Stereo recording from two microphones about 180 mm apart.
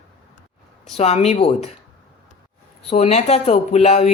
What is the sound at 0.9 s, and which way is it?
Speech, 35° left (ahead or behind).